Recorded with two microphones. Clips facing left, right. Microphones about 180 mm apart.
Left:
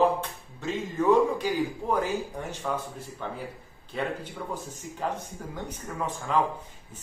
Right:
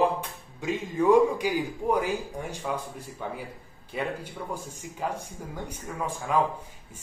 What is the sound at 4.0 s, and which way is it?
A man's voice, 10° right (ahead or behind).